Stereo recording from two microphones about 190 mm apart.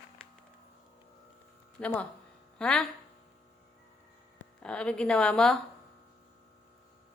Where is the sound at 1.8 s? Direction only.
5° left (ahead or behind).